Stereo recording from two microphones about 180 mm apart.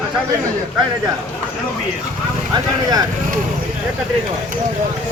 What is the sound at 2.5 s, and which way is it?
Speech, 20° right (ahead or behind).